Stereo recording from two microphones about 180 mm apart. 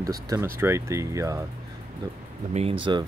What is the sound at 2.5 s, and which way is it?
Speech, 30° right (ahead or behind).